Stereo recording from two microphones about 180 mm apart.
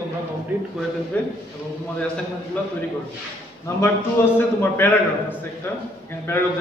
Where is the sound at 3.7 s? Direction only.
15° left (ahead or behind).